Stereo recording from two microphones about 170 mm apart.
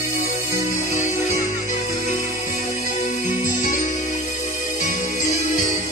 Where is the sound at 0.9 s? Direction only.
40° left (ahead or behind).